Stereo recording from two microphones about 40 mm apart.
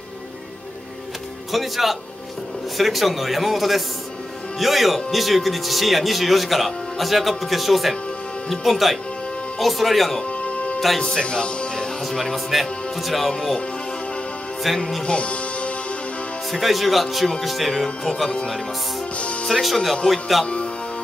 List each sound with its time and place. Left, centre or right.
1.5 s speech: centre
10.4 s music: left
11.0 s speech: centre
12.1 s speech: centre
12.4 s speech: centre
13.3 s speech: centre
15.0 s music: left
16.5 s speech: centre
17.8 s speech: centre
19.6 s speech: centre